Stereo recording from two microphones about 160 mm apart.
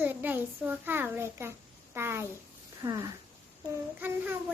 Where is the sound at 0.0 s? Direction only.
10° right (ahead or behind).